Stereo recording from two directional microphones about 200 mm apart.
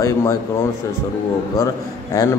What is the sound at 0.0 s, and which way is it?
Speech, 15° left (ahead or behind).